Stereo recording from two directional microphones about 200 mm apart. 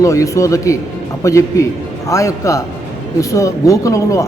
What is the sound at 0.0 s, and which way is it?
A man's voice, 15° left (ahead or behind).